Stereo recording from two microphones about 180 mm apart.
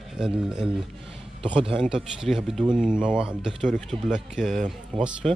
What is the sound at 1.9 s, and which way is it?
Speech, 5° right (ahead or behind).